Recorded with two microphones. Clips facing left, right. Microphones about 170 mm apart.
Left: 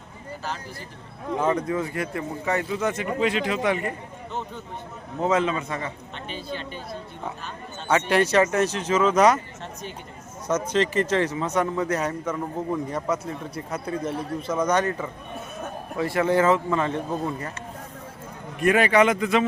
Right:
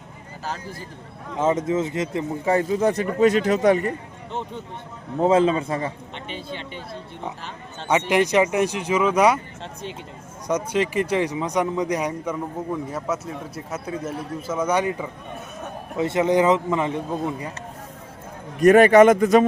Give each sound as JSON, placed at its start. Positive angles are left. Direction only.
{"t": 1.4, "sound": "a man's voice", "side_deg": -20}
{"t": 4.3, "sound": "a man's voice", "side_deg": -25}
{"t": 8.1, "sound": "speech", "side_deg": -15}
{"t": 10.5, "sound": "speech", "side_deg": -10}
{"t": 18.6, "sound": "a man's voice", "side_deg": -45}